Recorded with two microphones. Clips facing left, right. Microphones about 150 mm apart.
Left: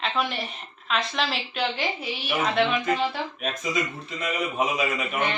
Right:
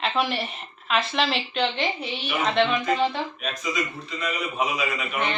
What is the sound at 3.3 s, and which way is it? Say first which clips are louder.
Speech: left 1 dB; 45° left (ahead or behind).